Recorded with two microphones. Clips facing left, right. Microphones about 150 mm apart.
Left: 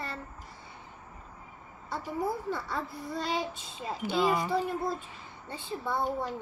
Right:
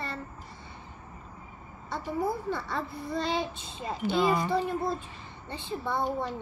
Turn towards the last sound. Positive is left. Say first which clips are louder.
# right 1 dB
turn(degrees=5)  # may be behind; listen again after turning